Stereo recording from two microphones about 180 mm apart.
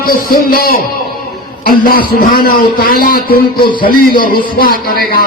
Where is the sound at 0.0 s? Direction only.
55° left (ahead or behind).